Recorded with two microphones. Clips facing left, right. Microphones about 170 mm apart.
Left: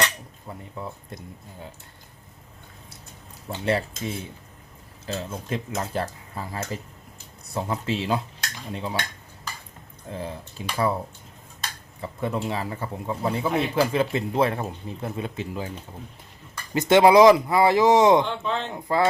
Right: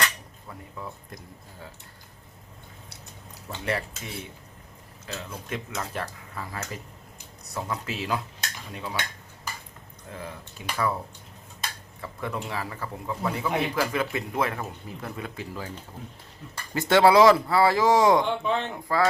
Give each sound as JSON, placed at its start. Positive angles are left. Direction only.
{"t": 0.0, "sound": "speech", "side_deg": 25}
{"t": 3.5, "sound": "speech", "side_deg": 30}
{"t": 5.0, "sound": "speech", "side_deg": 30}
{"t": 10.1, "sound": "speech", "side_deg": 30}
{"t": 12.0, "sound": "speech", "side_deg": 25}
{"t": 16.7, "sound": "speech", "side_deg": 20}
{"t": 18.3, "sound": "speech", "side_deg": -15}
{"t": 18.9, "sound": "speech", "side_deg": 20}